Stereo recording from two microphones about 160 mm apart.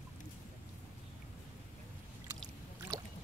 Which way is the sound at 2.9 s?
20° right (ahead or behind).